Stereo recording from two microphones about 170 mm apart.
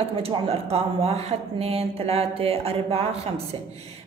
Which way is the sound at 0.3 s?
35° right (ahead or behind).